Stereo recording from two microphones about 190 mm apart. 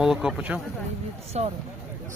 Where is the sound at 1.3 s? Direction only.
35° right (ahead or behind).